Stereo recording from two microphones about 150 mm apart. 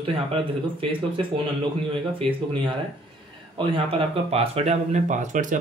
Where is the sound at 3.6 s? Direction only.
35° right (ahead or behind); by 5.5 s 55° right (ahead or behind).